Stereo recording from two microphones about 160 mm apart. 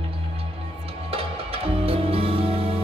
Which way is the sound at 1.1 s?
35° right (ahead or behind).